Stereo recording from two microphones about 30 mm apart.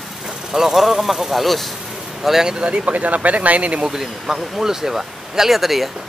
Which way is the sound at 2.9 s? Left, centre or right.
Right.